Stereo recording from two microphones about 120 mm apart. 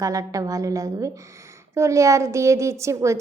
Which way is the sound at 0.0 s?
30° right (ahead or behind).